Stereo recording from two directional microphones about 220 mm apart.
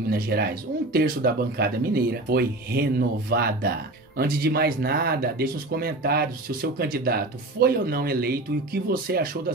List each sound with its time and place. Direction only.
0.1 s speech: 45° right (ahead or behind)